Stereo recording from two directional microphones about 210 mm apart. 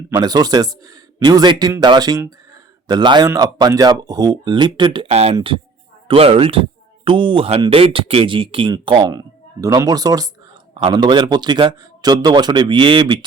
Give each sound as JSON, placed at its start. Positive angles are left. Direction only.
{"t": 0.1, "sound": "speech", "side_deg": -20}